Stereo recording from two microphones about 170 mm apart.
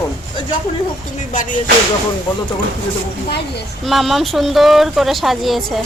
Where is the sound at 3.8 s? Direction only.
Centre (ahead or behind).